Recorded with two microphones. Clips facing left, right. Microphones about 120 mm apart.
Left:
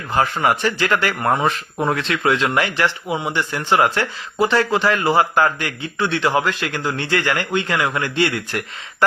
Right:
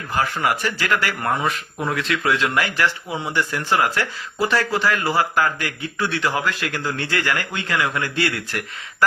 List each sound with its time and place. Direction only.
0.2 s speech: 25° left (ahead or behind)